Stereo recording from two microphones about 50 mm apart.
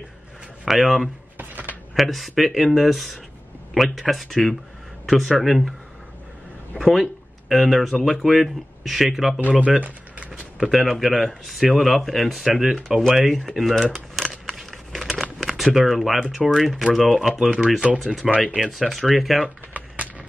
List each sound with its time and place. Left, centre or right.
0.7 s speech: centre
1.4 s a sound: right
2.0 s speech: centre
6.8 s speech: centre
9.6 s speech: right
10.6 s speech: centre
13.9 s a sound: centre
14.3 s a sound: centre
15.0 s crumpling: centre
15.4 s speech: centre
17.5 s speech: centre
18.2 s speech: centre
19.7 s a sound: right